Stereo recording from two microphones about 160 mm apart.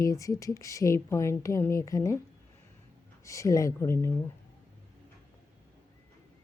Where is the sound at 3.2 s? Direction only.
20° left (ahead or behind).